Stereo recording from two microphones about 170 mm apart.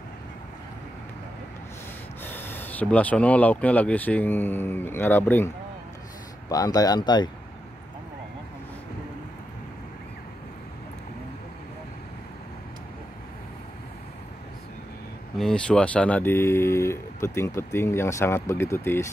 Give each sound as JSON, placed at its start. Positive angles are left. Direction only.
{"t": 2.2, "sound": "speech", "side_deg": 10}
{"t": 6.5, "sound": "speech", "side_deg": 20}
{"t": 15.3, "sound": "speech", "side_deg": 5}